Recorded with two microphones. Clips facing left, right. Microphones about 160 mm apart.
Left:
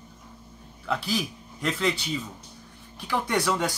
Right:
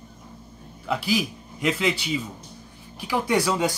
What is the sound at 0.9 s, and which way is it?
A man's voice, 5° right (ahead or behind).